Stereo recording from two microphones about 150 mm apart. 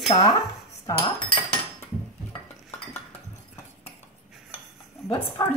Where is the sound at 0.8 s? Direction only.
30° left (ahead or behind).